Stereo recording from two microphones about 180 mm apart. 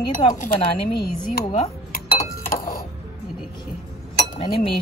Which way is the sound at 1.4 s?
30° left (ahead or behind).